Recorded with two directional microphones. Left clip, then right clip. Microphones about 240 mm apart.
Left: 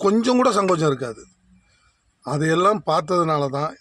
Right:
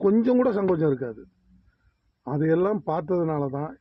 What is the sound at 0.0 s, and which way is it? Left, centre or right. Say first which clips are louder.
Speech: left 3 dB; centre.